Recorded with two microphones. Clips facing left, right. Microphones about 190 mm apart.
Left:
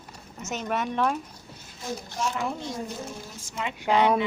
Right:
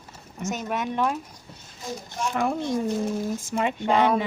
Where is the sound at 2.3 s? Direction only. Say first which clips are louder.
Right 6 dB; 55° right (ahead or behind).